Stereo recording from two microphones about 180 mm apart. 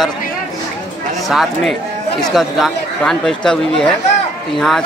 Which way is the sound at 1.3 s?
Centre (ahead or behind).